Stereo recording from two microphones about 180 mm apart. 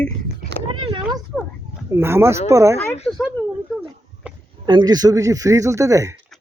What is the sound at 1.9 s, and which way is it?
Speech, 15° right (ahead or behind).